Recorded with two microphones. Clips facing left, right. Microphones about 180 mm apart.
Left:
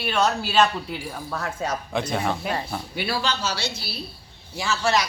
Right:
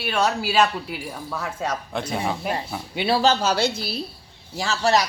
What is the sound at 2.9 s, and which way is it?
Speech, 25° right (ahead or behind).